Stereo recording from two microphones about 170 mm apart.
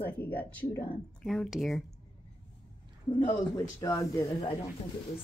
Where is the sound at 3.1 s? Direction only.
15° left (ahead or behind).